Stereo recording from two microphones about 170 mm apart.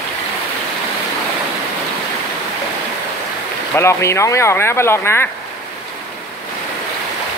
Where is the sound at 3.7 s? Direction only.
15° left (ahead or behind).